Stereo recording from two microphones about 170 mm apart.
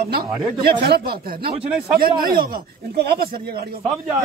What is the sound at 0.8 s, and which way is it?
Speech, 65° right (ahead or behind).